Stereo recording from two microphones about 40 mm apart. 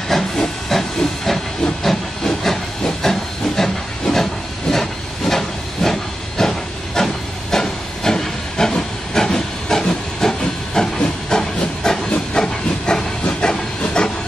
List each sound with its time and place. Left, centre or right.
0.1 s hiss: centre